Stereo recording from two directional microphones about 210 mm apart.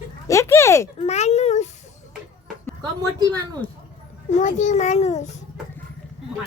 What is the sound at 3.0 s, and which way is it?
Speech, 15° right (ahead or behind).